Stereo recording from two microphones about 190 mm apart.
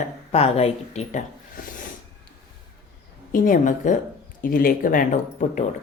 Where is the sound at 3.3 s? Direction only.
45° left (ahead or behind).